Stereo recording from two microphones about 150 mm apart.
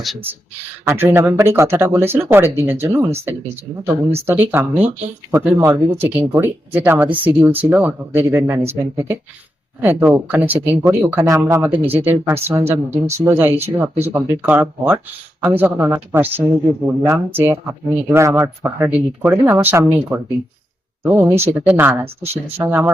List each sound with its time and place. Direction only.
0.9 s speech: 15° right (ahead or behind)